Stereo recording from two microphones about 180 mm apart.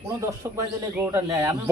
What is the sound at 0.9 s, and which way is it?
Speech, 15° right (ahead or behind).